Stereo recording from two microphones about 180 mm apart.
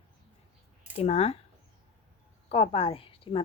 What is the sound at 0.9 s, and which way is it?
Speech, 35° left (ahead or behind).